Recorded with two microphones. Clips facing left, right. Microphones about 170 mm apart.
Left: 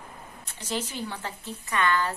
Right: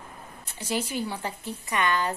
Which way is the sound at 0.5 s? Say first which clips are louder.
Right 3 dB; 10° right (ahead or behind).